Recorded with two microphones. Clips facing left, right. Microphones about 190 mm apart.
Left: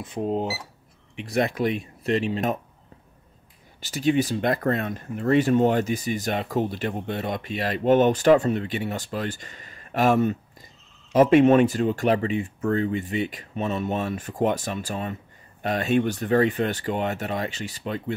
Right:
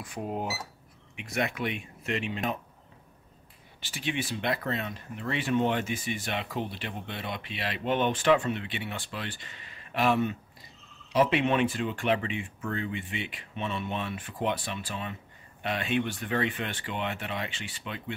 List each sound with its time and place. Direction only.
0.0 s speech: 25° left (ahead or behind); by 2.6 s 40° left (ahead or behind)
3.8 s speech: 40° left (ahead or behind)